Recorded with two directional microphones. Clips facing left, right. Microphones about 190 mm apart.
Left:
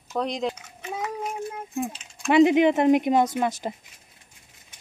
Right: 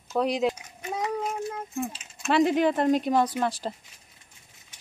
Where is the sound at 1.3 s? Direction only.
15° left (ahead or behind).